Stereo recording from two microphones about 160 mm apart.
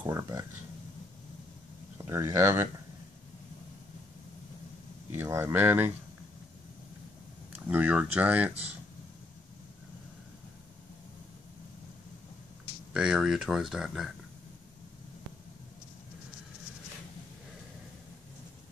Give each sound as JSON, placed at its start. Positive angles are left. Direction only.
{"t": 0.0, "sound": "speech", "side_deg": -20}
{"t": 2.0, "sound": "speech", "side_deg": -15}
{"t": 5.1, "sound": "speech", "side_deg": -15}
{"t": 7.5, "sound": "speech", "side_deg": -10}
{"t": 12.9, "sound": "speech", "side_deg": -5}